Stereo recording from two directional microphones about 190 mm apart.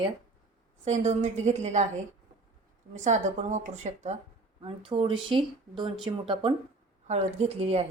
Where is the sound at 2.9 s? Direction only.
40° right (ahead or behind).